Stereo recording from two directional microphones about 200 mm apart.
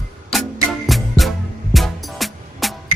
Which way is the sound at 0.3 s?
Centre (ahead or behind).